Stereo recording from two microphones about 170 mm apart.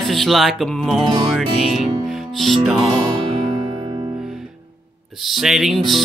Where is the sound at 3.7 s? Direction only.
25° right (ahead or behind).